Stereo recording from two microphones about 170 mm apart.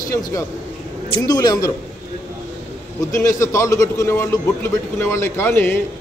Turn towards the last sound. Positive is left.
turn(degrees=15)  # may be behind; listen again after turning